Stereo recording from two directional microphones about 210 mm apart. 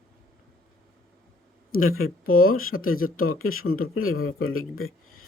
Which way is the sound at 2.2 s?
45° left (ahead or behind).